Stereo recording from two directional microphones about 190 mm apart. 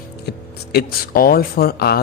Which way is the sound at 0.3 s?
55° left (ahead or behind).